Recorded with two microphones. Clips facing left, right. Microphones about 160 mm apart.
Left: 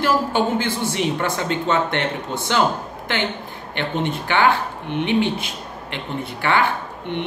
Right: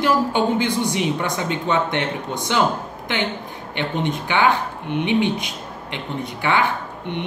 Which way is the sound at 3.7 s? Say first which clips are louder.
Even; 15° right (ahead or behind).